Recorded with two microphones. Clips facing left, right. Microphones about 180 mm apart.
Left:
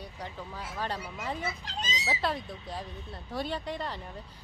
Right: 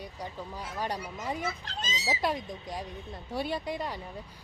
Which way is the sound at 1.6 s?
15° left (ahead or behind).